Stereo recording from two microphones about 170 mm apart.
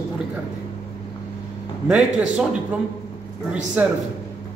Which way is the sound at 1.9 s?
5° right (ahead or behind).